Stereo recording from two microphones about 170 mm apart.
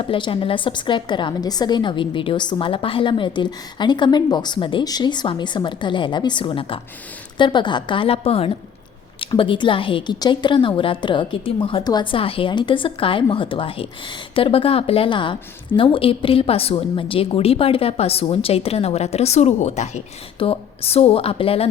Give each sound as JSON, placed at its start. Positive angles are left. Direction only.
{"t": 0.0, "sound": "a woman's voice", "side_deg": 30}